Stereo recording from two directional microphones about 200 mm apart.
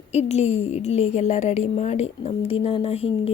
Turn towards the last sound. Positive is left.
turn(degrees=30)  # may be behind; listen again after turning